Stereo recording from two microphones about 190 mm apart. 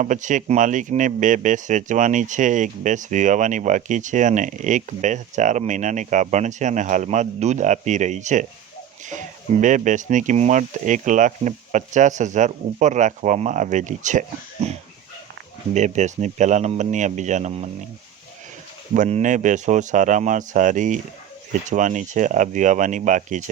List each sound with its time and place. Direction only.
0.0 s speech: 40° right (ahead or behind)
18.9 s speech: 40° right (ahead or behind)